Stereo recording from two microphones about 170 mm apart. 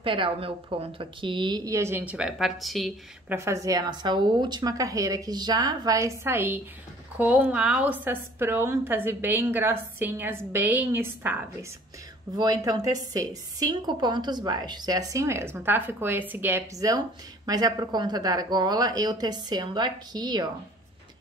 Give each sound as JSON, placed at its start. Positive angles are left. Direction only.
{"t": 0.0, "sound": "a woman's voice", "side_deg": -30}
{"t": 3.3, "sound": "a woman's voice", "side_deg": -15}
{"t": 12.4, "sound": "a woman's voice", "side_deg": -25}